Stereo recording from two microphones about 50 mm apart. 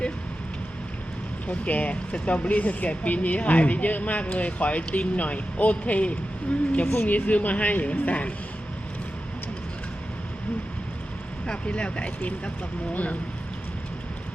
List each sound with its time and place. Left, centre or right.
1.5 s a woman's voice: left
11.4 s a woman's voice: centre